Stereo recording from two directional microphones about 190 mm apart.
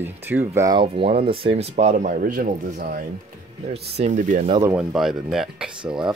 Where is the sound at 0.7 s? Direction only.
30° right (ahead or behind); by 3.0 s 50° right (ahead or behind).